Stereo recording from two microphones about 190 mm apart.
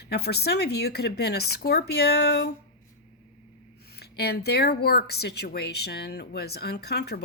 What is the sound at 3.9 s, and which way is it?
Speech, 55° left (ahead or behind).